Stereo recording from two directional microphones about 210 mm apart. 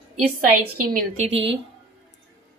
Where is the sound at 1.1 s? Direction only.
30° right (ahead or behind).